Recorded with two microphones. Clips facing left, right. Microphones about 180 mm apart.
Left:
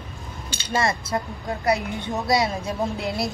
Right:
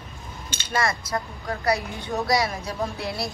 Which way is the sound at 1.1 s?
20° left (ahead or behind).